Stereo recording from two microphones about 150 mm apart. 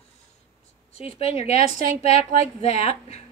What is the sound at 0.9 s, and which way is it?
Speech, 40° left (ahead or behind).